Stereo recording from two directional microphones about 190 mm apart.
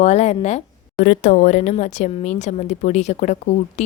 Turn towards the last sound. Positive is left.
turn(degrees=35)  # may be behind; listen again after turning